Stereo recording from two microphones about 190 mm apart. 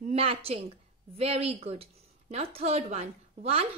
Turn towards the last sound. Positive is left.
turn(degrees=-35)  # may be behind; listen again after turning